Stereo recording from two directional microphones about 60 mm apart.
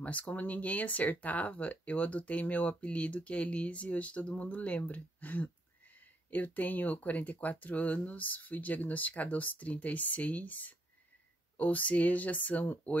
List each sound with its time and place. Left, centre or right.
0.0 s speech: left